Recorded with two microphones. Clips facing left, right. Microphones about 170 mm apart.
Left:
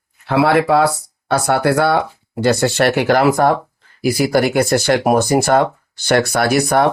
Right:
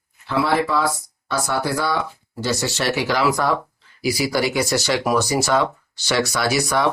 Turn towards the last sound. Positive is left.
turn(degrees=55)  # may be behind; listen again after turning